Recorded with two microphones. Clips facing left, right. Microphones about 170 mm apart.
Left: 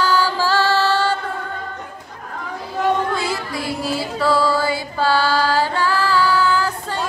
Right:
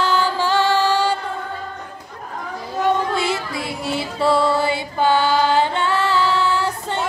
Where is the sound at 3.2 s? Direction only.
25° right (ahead or behind).